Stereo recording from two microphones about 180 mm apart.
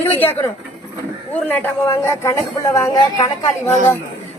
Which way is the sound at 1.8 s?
20° left (ahead or behind).